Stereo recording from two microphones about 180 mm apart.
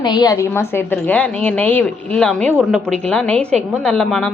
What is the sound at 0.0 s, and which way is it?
A woman's voice, 25° left (ahead or behind).